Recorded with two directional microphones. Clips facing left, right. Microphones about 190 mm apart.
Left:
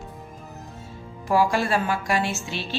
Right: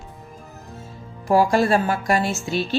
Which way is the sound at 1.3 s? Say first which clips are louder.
Right 4 dB; 40° right (ahead or behind).